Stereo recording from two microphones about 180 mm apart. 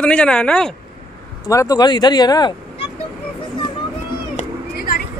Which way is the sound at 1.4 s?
20° left (ahead or behind).